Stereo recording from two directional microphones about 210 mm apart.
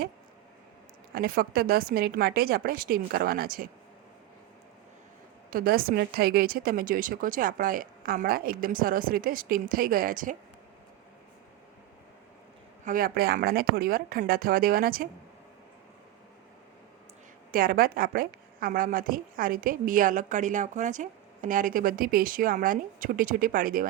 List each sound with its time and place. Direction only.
1.1 s a woman's voice: 45° right (ahead or behind)
5.5 s a woman's voice: 45° right (ahead or behind)
12.8 s a woman's voice: 40° right (ahead or behind)
17.5 s a woman's voice: 45° right (ahead or behind)